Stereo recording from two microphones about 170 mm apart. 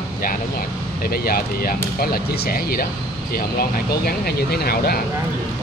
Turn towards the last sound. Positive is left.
turn(degrees=65)  # may be behind; listen again after turning